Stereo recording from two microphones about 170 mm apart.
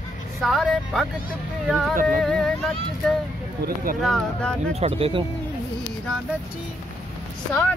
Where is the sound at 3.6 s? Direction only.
55° right (ahead or behind).